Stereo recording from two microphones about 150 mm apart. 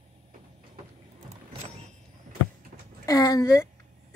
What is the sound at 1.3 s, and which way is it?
Vehicle, 45° right (ahead or behind).